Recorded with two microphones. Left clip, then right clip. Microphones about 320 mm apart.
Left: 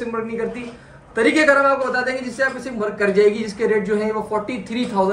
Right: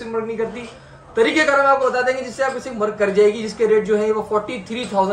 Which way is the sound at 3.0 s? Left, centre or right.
Centre.